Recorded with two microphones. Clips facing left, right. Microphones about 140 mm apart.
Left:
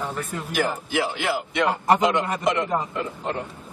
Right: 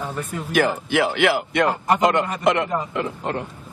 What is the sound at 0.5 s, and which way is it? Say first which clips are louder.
Speech: right 5 dB; 65° right (ahead or behind).